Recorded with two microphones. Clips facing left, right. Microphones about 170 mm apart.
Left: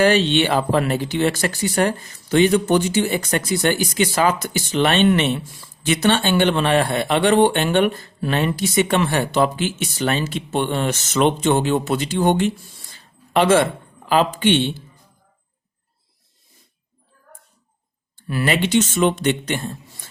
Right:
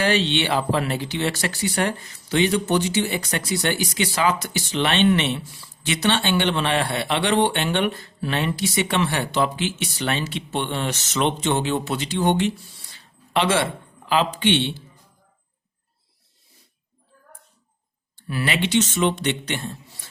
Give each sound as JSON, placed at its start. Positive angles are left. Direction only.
{"t": 0.0, "sound": "speech", "side_deg": 45}
{"t": 12.9, "sound": "a sound", "side_deg": 45}
{"t": 18.3, "sound": "speech", "side_deg": 45}